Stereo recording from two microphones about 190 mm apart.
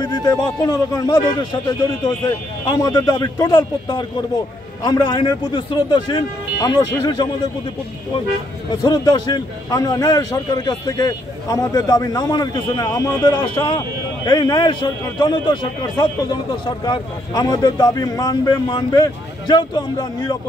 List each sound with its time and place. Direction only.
0.0 s a man's voice: 20° left (ahead or behind)
8.8 s a man's voice: 20° left (ahead or behind)